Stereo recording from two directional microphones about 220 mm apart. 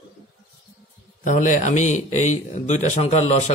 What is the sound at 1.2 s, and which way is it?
A man's voice, 35° left (ahead or behind).